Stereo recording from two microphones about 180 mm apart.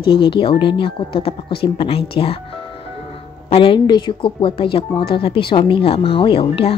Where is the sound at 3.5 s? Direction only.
30° left (ahead or behind).